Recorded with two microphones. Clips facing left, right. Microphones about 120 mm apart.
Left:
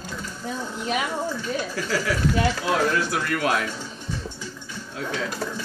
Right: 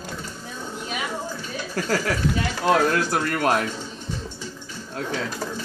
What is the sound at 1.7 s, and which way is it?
Speech, 45° right (ahead or behind).